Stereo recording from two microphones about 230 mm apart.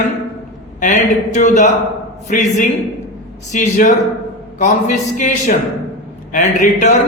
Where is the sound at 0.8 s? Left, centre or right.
Left.